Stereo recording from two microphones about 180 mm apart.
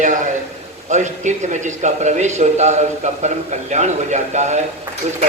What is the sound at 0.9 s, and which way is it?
A man's voice, 40° right (ahead or behind).